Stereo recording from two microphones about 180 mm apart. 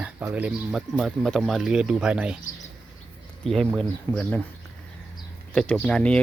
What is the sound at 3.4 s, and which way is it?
Speech, centre (ahead or behind).